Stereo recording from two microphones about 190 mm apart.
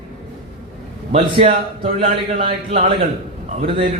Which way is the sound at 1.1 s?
35° right (ahead or behind).